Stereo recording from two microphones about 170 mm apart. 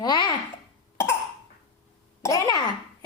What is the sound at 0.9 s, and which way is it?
Cough, 15° left (ahead or behind).